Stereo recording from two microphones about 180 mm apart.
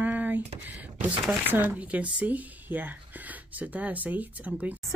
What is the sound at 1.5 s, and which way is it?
Music, 10° right (ahead or behind).